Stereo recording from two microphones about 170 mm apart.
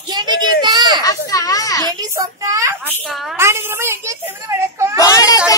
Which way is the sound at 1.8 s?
20° right (ahead or behind).